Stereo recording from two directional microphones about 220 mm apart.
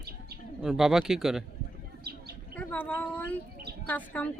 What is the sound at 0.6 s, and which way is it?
Speech, centre (ahead or behind).